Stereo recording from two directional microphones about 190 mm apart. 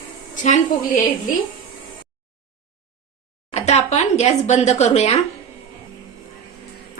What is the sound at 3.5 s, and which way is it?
A woman's voice, 35° left (ahead or behind).